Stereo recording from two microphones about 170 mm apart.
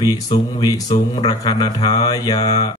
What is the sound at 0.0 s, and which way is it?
Mantra, 20° left (ahead or behind).